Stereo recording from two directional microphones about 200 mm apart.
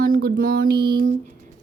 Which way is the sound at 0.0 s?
50° right (ahead or behind).